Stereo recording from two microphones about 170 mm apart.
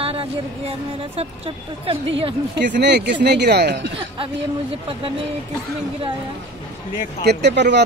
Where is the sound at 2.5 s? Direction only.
85° right.